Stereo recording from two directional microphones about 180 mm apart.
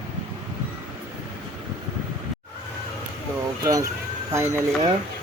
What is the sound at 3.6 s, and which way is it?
Speech, 20° right (ahead or behind).